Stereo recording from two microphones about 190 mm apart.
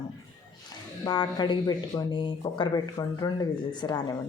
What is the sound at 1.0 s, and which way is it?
Speech, 20° left (ahead or behind).